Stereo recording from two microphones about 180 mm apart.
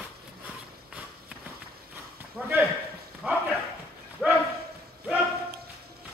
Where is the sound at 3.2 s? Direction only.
10° right (ahead or behind).